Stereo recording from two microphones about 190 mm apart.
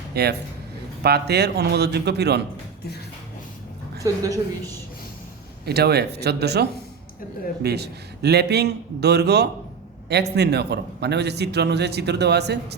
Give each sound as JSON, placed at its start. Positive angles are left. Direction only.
{"t": 0.1, "sound": "a man's voice", "side_deg": -60}
{"t": 4.0, "sound": "a woman's voice", "side_deg": -15}
{"t": 5.6, "sound": "a man's voice", "side_deg": -55}